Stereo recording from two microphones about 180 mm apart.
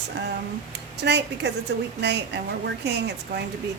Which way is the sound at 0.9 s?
70° right (ahead or behind).